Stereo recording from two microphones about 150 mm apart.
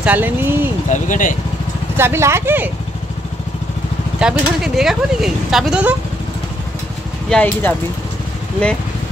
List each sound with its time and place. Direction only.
0.0 s speech: 10° right (ahead or behind)
0.8 s speech: 55° left (ahead or behind)
2.0 s speech: 15° right (ahead or behind)
4.2 s speech: 5° right (ahead or behind)
7.2 s speech: 10° left (ahead or behind)